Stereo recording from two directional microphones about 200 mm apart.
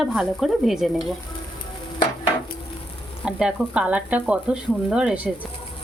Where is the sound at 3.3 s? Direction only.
5° right (ahead or behind).